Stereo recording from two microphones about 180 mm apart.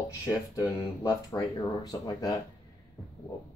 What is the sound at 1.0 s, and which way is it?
Speech, 20° left (ahead or behind).